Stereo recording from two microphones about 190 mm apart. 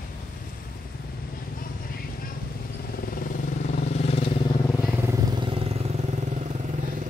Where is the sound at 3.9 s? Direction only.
30° left (ahead or behind).